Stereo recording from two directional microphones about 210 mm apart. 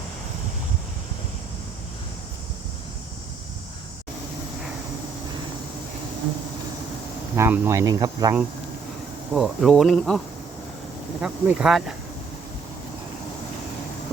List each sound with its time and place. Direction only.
7.3 s speech: 10° right (ahead or behind)
9.3 s speech: centre (ahead or behind)
11.2 s speech: 5° right (ahead or behind)